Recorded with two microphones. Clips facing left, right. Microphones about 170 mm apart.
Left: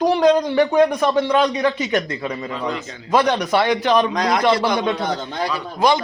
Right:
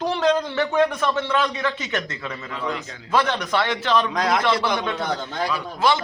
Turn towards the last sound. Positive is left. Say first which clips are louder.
# left 3 dB
turn(degrees=15)  # may be behind; listen again after turning